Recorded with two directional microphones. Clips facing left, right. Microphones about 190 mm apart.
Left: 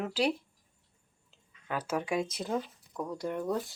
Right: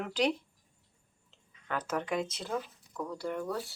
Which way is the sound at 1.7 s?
10° left (ahead or behind).